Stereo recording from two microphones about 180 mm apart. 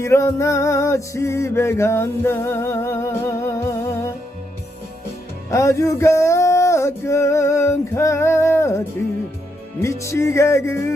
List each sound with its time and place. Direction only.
0.0 s music: 15° left (ahead or behind)
5.5 s music: 15° left (ahead or behind)
9.8 s music: 15° left (ahead or behind)